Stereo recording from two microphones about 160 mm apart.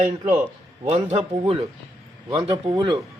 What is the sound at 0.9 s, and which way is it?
Speech, 40° right (ahead or behind).